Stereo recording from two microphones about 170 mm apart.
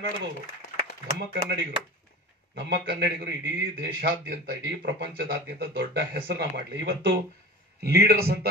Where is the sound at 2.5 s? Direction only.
80° right.